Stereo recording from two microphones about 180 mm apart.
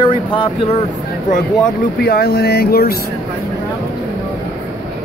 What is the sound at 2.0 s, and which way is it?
Speech, 60° left (ahead or behind).